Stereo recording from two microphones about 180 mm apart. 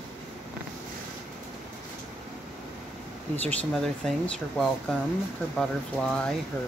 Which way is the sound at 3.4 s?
5° left (ahead or behind).